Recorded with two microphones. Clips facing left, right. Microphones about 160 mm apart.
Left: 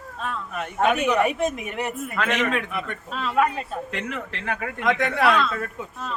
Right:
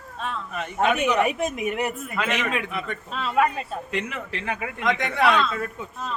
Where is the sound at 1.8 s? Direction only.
5° right (ahead or behind).